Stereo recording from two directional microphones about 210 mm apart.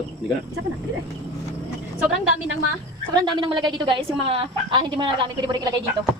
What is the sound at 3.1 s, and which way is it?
A woman's voice, 20° right (ahead or behind).